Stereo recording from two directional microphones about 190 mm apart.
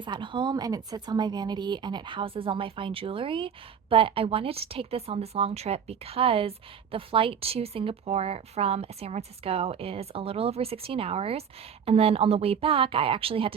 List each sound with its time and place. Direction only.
0.0 s a woman's voice: 25° right (ahead or behind)